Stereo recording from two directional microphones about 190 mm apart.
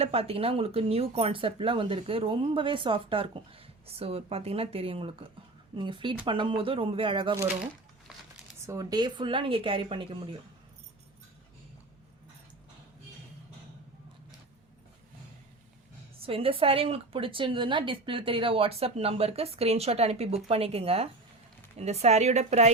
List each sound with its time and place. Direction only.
0.0 s speech: 30° right (ahead or behind)
8.6 s speech: 15° right (ahead or behind)
16.2 s a woman's voice: 30° right (ahead or behind)